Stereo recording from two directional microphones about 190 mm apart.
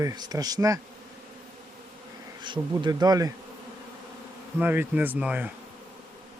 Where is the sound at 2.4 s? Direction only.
25° right (ahead or behind).